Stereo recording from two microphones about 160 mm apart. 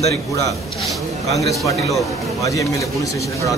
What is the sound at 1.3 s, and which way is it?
Speech, centre (ahead or behind).